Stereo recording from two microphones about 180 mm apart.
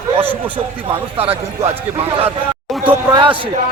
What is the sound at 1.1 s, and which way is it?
Speech, 30° right (ahead or behind).